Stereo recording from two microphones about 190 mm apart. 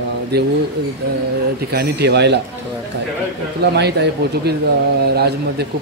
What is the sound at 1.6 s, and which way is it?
Speech, 55° right (ahead or behind).